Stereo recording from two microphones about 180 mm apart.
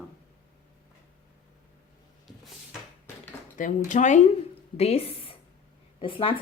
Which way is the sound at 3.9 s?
45° left (ahead or behind).